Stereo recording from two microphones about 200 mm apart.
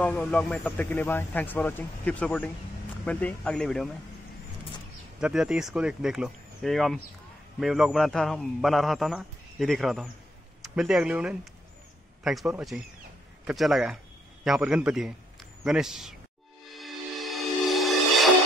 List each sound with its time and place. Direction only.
0.0 s speech: 5° left (ahead or behind)
5.2 s speech: 5° right (ahead or behind)
16.6 s music: centre (ahead or behind)